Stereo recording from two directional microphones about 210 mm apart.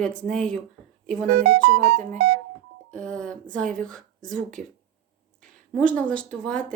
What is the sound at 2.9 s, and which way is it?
A woman's voice, 5° left (ahead or behind).